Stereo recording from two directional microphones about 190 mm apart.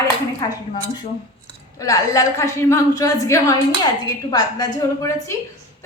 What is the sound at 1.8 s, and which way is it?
A woman's voice, 20° left (ahead or behind).